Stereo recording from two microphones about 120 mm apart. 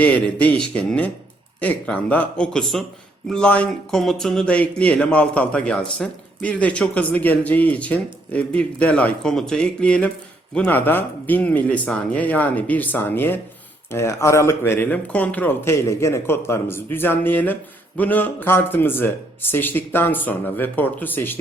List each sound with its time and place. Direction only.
0.0 s speech: 10° left (ahead or behind)